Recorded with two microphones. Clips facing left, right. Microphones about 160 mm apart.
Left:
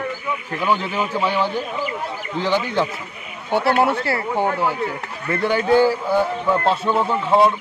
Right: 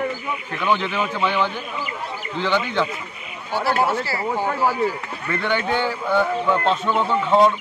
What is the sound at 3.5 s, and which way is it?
Speech, 60° left (ahead or behind).